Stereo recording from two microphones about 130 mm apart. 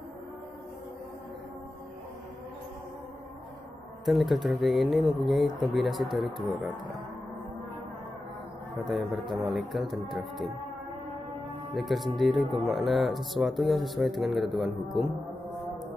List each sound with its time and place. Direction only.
4.0 s speech: centre (ahead or behind)
8.8 s speech: centre (ahead or behind)
11.7 s speech: centre (ahead or behind)